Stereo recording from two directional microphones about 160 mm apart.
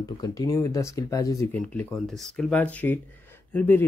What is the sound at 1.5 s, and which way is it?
Speech, 10° left (ahead or behind).